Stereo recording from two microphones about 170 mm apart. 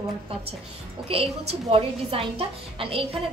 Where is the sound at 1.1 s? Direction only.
35° right (ahead or behind).